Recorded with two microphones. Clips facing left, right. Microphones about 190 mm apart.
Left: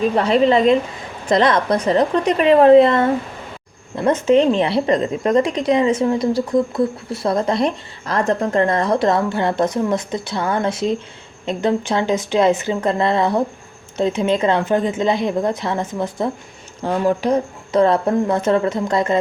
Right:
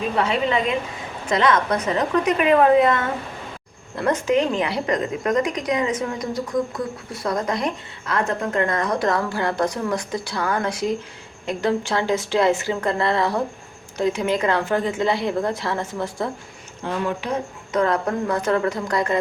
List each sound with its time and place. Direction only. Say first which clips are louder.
0.2 s a woman's voice: left 7 dB; 35° left (ahead or behind); by 16.3 s 20° left (ahead or behind)
16.8 s a woman's voice: left 7 dB; 40° left (ahead or behind)